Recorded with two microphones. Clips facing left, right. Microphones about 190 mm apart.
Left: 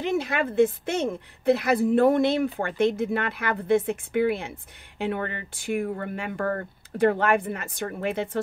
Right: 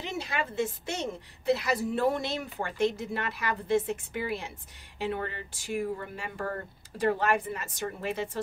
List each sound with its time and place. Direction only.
0.0 s speech: 55° left (ahead or behind)